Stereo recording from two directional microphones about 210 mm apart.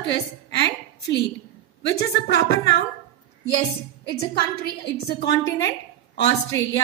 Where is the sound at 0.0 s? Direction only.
55° left (ahead or behind).